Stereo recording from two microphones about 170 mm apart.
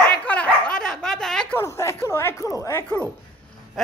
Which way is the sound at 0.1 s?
10° left (ahead or behind).